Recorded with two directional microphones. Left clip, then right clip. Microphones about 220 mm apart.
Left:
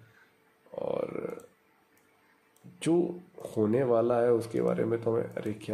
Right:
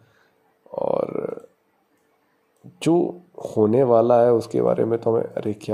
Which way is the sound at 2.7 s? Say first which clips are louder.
Right 8 dB; 25° right (ahead or behind).